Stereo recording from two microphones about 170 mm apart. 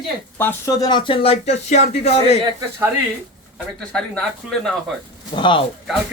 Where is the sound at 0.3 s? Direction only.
10° left (ahead or behind).